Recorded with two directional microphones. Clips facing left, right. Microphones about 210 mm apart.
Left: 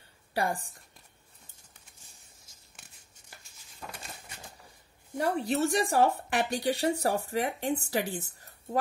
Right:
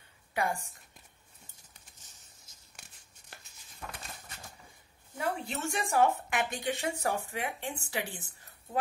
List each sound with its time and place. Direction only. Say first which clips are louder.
0.3 s a woman's voice: left 2 dB; 35° left (ahead or behind)
3.8 s a sound: left 1 dB; 5° left (ahead or behind)
5.1 s speech: left 6 dB; 40° left (ahead or behind)